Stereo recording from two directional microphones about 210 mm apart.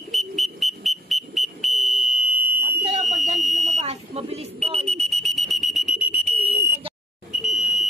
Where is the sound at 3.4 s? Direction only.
Centre (ahead or behind).